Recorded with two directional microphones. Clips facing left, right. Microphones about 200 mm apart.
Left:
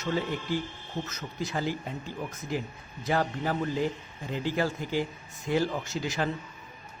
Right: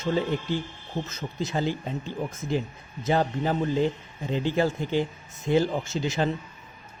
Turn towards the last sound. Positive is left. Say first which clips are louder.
# right 4 dB
turn(degrees=-25)  # may be behind; listen again after turning